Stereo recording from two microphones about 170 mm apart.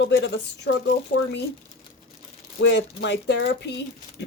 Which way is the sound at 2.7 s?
90° left.